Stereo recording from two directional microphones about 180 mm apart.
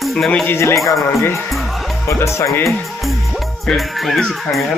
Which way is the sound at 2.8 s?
Centre (ahead or behind).